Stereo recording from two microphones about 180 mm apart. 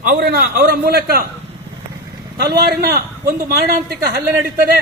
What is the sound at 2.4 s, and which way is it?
A man's voice, 65° right (ahead or behind).